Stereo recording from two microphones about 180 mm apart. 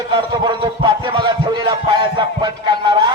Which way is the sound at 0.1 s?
25° right (ahead or behind).